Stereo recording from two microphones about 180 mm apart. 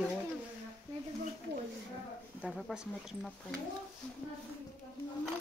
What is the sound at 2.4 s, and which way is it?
Speech, centre (ahead or behind).